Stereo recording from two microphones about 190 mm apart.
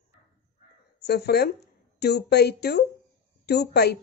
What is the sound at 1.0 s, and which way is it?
A woman's voice, 55° left (ahead or behind).